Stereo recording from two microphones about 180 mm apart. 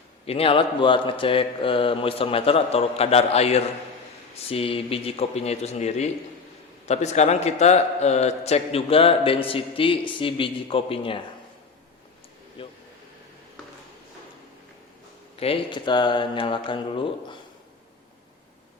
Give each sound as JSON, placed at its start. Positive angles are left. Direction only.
{"t": 0.3, "sound": "a man's voice", "side_deg": 30}
{"t": 12.6, "sound": "speech", "side_deg": 30}
{"t": 15.4, "sound": "speech", "side_deg": 30}